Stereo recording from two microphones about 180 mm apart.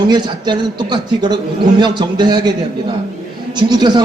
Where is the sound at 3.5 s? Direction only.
25° right (ahead or behind).